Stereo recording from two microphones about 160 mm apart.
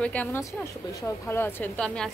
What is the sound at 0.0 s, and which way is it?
A woman's voice, 10° left (ahead or behind).